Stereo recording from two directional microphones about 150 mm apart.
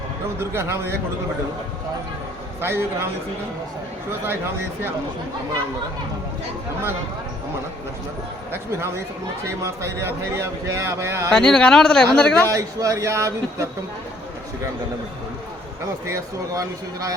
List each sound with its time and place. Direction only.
0.3 s speech: 15° right (ahead or behind)
2.6 s speech: 15° right (ahead or behind)
9.6 s speech: 20° right (ahead or behind)
11.3 s a woman's voice: 5° left (ahead or behind)
12.5 s speech: 20° right (ahead or behind)
16.0 s speech: 20° right (ahead or behind)